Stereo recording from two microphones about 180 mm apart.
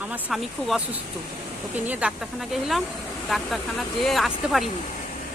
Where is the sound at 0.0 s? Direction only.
10° right (ahead or behind).